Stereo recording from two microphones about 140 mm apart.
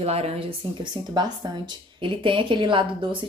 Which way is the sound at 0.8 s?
30° right (ahead or behind).